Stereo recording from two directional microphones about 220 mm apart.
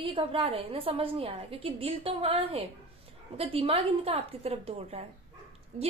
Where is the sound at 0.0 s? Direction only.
25° right (ahead or behind).